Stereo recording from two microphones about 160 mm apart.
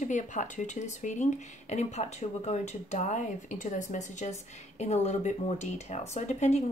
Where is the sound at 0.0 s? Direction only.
50° left (ahead or behind).